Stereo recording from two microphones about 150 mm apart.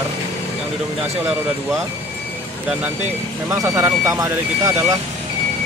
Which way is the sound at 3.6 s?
20° right (ahead or behind).